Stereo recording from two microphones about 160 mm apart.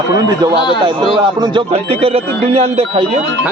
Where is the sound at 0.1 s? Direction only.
25° right (ahead or behind); by 3.1 s 40° right (ahead or behind).